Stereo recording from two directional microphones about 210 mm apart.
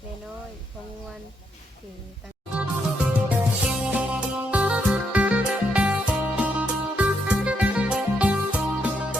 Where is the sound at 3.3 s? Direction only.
5° right (ahead or behind).